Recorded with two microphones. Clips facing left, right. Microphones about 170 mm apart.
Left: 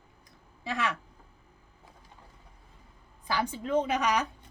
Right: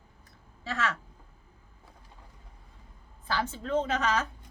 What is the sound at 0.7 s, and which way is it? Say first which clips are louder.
Speech: even; 15° left (ahead or behind).